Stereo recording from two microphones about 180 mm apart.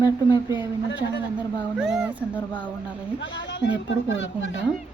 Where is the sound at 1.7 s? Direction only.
5° right (ahead or behind).